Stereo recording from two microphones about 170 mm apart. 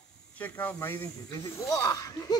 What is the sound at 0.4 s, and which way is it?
Speech, 10° left (ahead or behind).